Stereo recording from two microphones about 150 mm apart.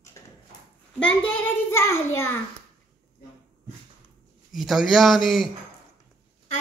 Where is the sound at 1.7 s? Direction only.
15° left (ahead or behind).